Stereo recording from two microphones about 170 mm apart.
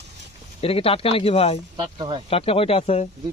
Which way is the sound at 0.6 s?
35° left (ahead or behind).